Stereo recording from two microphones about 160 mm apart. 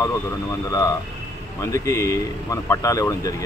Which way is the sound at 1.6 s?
20° left (ahead or behind).